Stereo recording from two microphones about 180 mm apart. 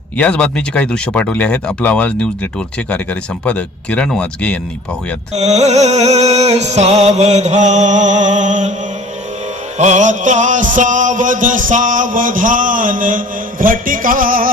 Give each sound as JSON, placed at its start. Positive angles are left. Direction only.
{"t": 0.2, "sound": "speech", "side_deg": 5}
{"t": 5.3, "sound": "music", "side_deg": -35}
{"t": 9.7, "sound": "music", "side_deg": -40}